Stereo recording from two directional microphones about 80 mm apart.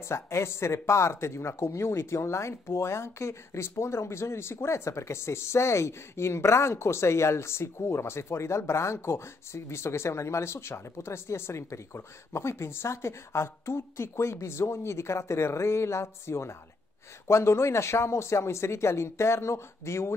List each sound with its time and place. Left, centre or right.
0.1 s speech: left